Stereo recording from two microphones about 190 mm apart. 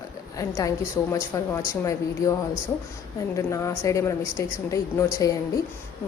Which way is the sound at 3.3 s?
15° left (ahead or behind).